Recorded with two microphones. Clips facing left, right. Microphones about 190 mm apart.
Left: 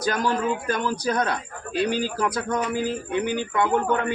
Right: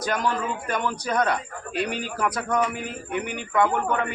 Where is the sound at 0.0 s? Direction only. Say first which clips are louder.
Left 2 dB; 35° left (ahead or behind).